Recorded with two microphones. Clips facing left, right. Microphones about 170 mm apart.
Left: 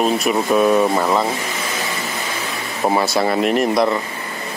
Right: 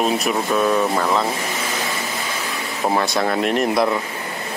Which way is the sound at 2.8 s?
5° left (ahead or behind).